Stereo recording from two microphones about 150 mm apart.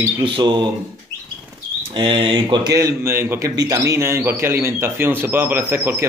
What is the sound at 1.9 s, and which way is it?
Speech, 35° right (ahead or behind).